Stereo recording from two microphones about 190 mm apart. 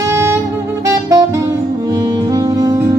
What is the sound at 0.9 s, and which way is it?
Music, 15° right (ahead or behind).